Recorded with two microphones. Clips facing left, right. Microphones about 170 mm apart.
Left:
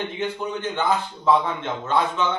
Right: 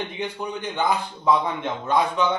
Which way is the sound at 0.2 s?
15° right (ahead or behind).